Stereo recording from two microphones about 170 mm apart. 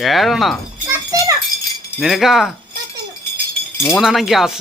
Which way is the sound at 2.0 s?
Centre (ahead or behind).